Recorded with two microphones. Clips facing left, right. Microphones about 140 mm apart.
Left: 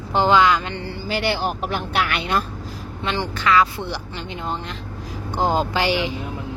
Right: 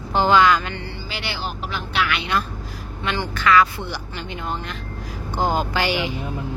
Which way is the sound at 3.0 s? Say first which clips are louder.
Right 1 dB; 30° left (ahead or behind).